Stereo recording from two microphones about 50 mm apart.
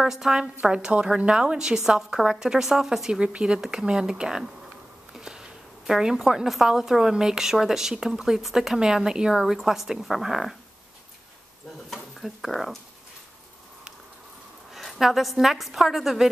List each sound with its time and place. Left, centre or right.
0.0 s a woman's voice: centre
11.9 s speech: centre
14.7 s a woman's voice: centre